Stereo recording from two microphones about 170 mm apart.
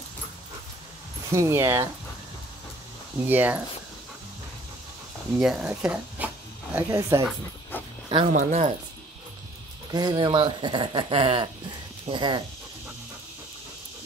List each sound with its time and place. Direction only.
1.3 s speech: 15° right (ahead or behind)
3.3 s speech: 10° right (ahead or behind)
5.4 s speech: 5° right (ahead or behind)
7.7 s dog: 10° left (ahead or behind)
8.3 s speech: 45° right (ahead or behind)
9.8 s speech: 25° right (ahead or behind)